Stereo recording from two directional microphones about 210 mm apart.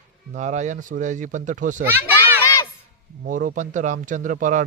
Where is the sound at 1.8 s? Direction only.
10° right (ahead or behind).